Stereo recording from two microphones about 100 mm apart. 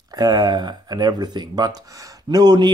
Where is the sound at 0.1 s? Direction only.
40° right (ahead or behind).